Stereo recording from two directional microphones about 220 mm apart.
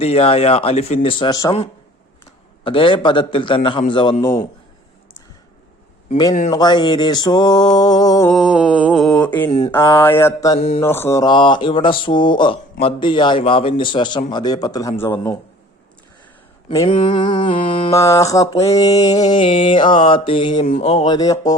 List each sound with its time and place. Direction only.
0.0 s a man's voice: 25° left (ahead or behind)
2.6 s a man's voice: 25° left (ahead or behind)
6.5 s a man's voice: 20° left (ahead or behind)
8.3 s mantra: centre (ahead or behind)
9.5 s speech: 30° left (ahead or behind)
9.7 s a man's voice: 10° left (ahead or behind)
16.6 s mantra: 20° left (ahead or behind)
17.9 s a man's voice: 15° left (ahead or behind); by 21.2 s 30° left (ahead or behind)
21.2 s speech: 15° left (ahead or behind)